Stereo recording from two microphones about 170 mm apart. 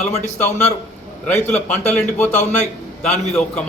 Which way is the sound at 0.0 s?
40° left (ahead or behind).